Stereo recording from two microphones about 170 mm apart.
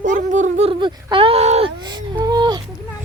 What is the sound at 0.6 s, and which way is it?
Speech, 30° right (ahead or behind).